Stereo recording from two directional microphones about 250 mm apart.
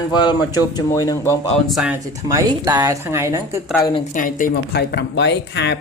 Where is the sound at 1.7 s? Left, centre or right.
Centre.